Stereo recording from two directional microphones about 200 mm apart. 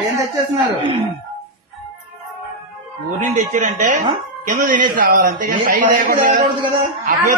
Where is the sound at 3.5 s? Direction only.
35° right (ahead or behind).